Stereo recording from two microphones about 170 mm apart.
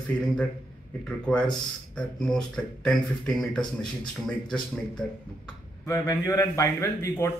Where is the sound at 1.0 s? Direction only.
5° left (ahead or behind).